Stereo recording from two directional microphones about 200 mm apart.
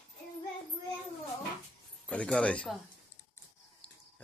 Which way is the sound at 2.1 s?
5° left (ahead or behind).